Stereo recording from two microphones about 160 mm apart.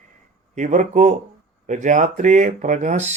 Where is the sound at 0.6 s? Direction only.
50° right (ahead or behind).